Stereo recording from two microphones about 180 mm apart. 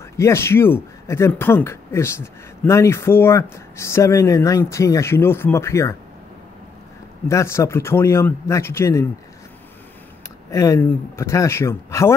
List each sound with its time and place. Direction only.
0.2 s speech: 15° left (ahead or behind)
7.2 s speech: 15° left (ahead or behind)
10.5 s speech: 15° left (ahead or behind)